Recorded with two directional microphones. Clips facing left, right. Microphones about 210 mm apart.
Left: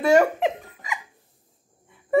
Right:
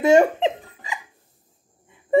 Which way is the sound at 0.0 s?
25° right (ahead or behind).